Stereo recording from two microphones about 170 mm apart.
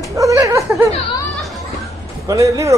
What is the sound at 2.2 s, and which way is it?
Speech, 20° right (ahead or behind).